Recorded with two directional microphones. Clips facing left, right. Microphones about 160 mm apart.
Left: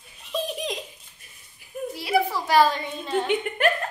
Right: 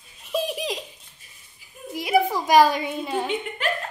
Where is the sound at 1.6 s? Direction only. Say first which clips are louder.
Left 4 dB; 60° left (ahead or behind).